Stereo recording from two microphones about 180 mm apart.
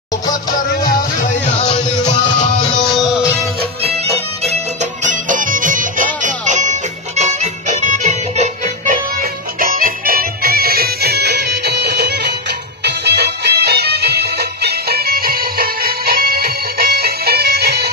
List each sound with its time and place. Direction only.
3.8 s music: 35° right (ahead or behind)
5.0 s music: 45° right (ahead or behind)
9.6 s music: 50° right (ahead or behind)